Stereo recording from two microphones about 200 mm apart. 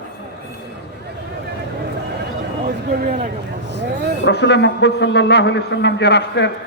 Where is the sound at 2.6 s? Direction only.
50° right (ahead or behind).